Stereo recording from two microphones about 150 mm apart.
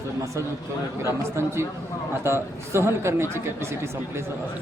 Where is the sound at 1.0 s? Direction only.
15° right (ahead or behind).